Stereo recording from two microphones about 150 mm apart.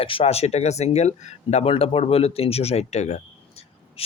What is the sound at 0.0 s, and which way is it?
Speech, 40° left (ahead or behind).